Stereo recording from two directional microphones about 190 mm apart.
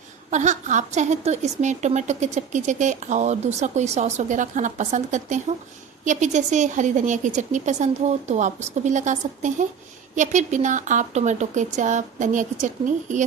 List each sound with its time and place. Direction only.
0.3 s a woman's voice: 40° right (ahead or behind)